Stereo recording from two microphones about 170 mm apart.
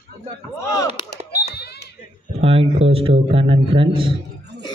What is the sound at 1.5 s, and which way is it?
Smoke detector, 75° left (ahead or behind).